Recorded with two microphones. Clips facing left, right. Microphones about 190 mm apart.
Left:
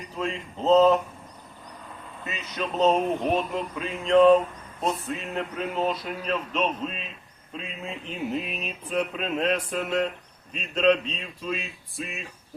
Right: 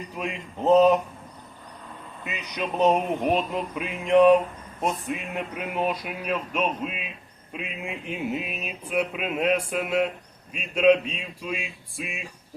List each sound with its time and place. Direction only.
0.2 s speech: 15° right (ahead or behind)
2.2 s speech: 15° right (ahead or behind)